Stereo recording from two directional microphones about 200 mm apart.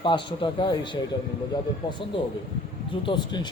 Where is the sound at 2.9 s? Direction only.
25° left (ahead or behind).